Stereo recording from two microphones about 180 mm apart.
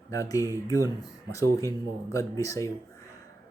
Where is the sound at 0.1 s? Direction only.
20° left (ahead or behind).